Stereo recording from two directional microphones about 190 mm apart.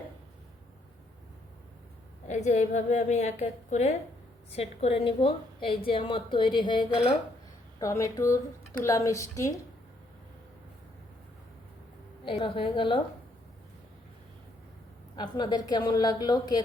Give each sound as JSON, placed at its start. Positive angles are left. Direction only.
{"t": 2.2, "sound": "a woman's voice", "side_deg": 40}
{"t": 12.2, "sound": "a woman's voice", "side_deg": 25}
{"t": 15.1, "sound": "a woman's voice", "side_deg": 20}